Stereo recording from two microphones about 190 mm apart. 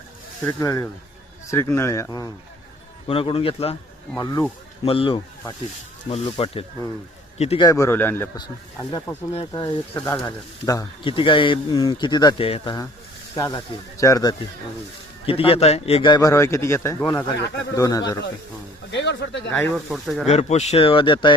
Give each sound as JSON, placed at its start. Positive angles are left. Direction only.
{"t": 0.4, "sound": "a man's voice", "side_deg": 15}
{"t": 4.2, "sound": "a man's voice", "side_deg": 20}
{"t": 7.6, "sound": "a man's voice", "side_deg": 15}
{"t": 8.8, "sound": "a man's voice", "side_deg": 25}
{"t": 15.3, "sound": "a man's voice", "side_deg": 30}
{"t": 18.9, "sound": "speech", "side_deg": 65}
{"t": 19.7, "sound": "speech", "side_deg": 0}
{"t": 20.2, "sound": "speech", "side_deg": 35}